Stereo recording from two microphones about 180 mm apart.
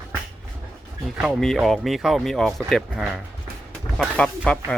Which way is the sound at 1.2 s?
Centre (ahead or behind).